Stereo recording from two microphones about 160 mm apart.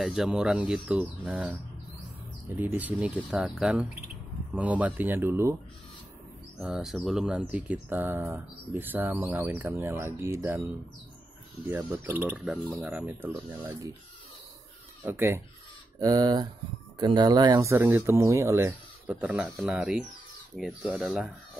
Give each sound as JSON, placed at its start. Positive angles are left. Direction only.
{"t": 0.0, "sound": "speech", "side_deg": 0}
{"t": 2.5, "sound": "speech", "side_deg": -10}
{"t": 6.6, "sound": "speech", "side_deg": 0}
{"t": 11.7, "sound": "speech", "side_deg": -15}
{"t": 15.0, "sound": "speech", "side_deg": -15}